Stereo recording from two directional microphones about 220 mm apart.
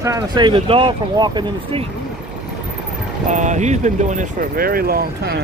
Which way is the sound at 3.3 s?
35° right (ahead or behind).